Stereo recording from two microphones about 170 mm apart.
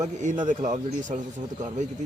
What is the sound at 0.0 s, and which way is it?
A man's voice, 45° right (ahead or behind).